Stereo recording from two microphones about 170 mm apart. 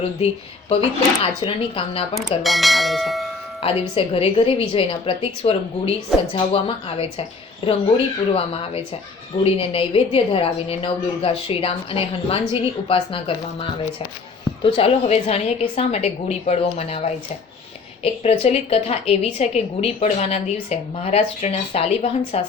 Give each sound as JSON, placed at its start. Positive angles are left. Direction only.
{"t": 0.7, "sound": "a woman's voice", "side_deg": 35}
{"t": 2.4, "sound": "speech", "side_deg": 0}
{"t": 3.6, "sound": "a woman's voice", "side_deg": 35}